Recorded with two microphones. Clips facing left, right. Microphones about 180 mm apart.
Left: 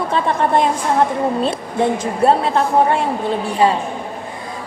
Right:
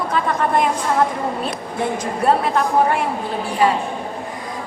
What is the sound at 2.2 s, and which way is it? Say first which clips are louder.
Speech: left 3 dB; 30° left (ahead or behind).